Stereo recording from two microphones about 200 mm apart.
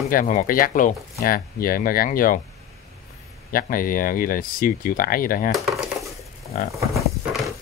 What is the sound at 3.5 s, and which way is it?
Speech, 45° left (ahead or behind).